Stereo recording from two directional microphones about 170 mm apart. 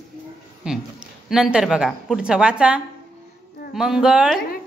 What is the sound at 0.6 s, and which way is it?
A man's voice, 5° right (ahead or behind).